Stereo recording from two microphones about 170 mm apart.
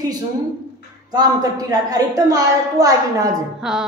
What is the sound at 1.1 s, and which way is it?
A woman's voice, 25° right (ahead or behind).